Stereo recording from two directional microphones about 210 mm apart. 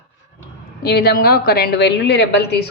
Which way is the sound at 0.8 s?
50° left (ahead or behind).